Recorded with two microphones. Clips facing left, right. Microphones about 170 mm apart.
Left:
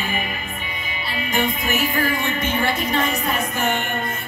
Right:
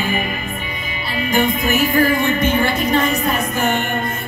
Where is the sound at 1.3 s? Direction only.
40° right (ahead or behind).